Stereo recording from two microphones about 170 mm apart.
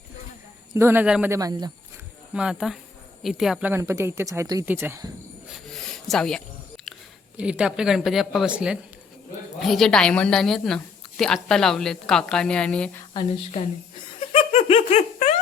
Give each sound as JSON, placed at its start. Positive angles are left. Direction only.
{"t": 0.7, "sound": "speech", "side_deg": -15}
{"t": 2.3, "sound": "a woman's voice", "side_deg": -5}
{"t": 5.6, "sound": "a sound", "side_deg": 5}
{"t": 7.3, "sound": "a woman's voice", "side_deg": -5}
{"t": 14.2, "sound": "giggle", "side_deg": 40}